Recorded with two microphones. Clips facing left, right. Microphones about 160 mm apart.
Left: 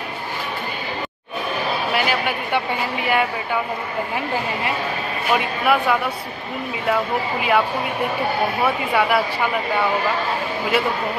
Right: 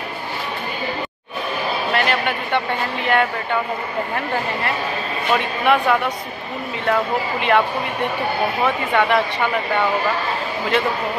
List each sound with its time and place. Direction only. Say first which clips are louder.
1.9 s speech: right 3 dB; 10° left (ahead or behind)
5.3 s speech: right 1 dB; 5° left (ahead or behind)
8.6 s speech: right 2 dB; 5° left (ahead or behind)
10.7 s speech: right 1 dB; 5° left (ahead or behind)